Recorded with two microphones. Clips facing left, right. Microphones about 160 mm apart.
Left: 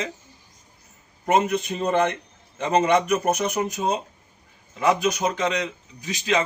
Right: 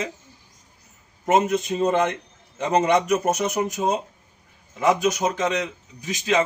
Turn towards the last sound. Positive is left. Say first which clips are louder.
# right 2 dB
turn(degrees=-15)  # may be behind; listen again after turning